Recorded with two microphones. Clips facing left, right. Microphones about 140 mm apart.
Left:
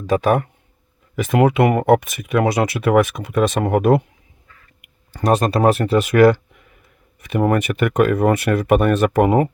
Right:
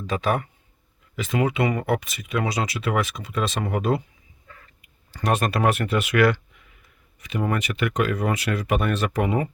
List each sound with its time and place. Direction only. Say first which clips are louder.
0.1 s speech: left 8 dB; 45° left (ahead or behind)
5.2 s speech: left 6 dB; 35° left (ahead or behind)
7.2 s speech: left 8 dB; 55° left (ahead or behind)